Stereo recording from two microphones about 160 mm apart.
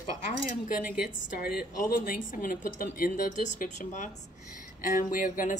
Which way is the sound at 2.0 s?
60° left (ahead or behind).